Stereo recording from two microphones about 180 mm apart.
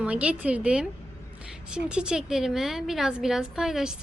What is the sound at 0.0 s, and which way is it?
A woman's voice, 5° right (ahead or behind).